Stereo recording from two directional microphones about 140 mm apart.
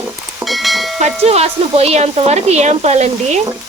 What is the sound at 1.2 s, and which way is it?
Speech, 45° right (ahead or behind).